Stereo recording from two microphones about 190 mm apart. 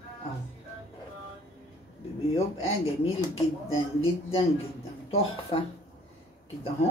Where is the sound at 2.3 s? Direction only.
30° left (ahead or behind).